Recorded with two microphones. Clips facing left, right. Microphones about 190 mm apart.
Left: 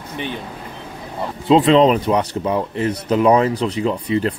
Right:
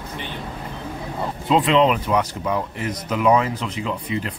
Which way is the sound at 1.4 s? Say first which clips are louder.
Left 5 dB; 30° left (ahead or behind).